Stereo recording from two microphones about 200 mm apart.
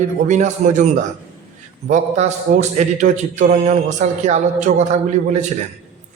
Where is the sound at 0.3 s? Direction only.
35° right (ahead or behind).